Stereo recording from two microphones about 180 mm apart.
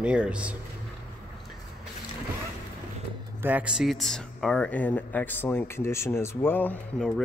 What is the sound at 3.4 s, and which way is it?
Speech, 10° right (ahead or behind).